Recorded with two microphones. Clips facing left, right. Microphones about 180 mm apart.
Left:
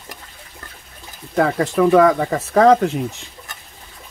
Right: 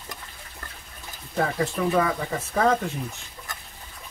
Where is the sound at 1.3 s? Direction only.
80° left.